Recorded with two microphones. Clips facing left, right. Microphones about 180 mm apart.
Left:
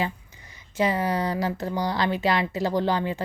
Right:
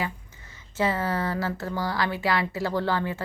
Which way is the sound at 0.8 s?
15° left (ahead or behind).